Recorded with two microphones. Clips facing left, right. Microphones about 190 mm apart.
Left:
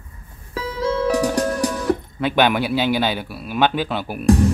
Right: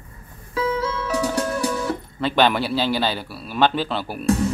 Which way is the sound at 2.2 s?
15° left (ahead or behind).